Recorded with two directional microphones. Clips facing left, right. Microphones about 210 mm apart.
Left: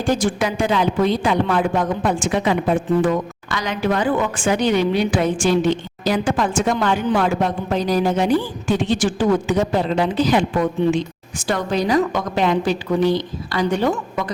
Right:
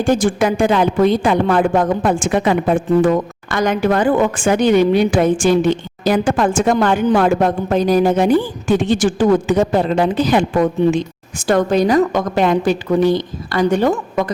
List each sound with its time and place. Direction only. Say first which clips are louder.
0.0 s a woman's voice: right 5 dB; 50° right (ahead or behind)